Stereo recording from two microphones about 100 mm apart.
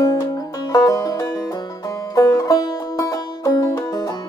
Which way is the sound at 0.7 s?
40° left (ahead or behind).